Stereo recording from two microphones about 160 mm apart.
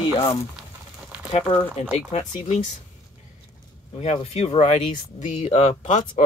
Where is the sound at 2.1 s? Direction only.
40° left (ahead or behind).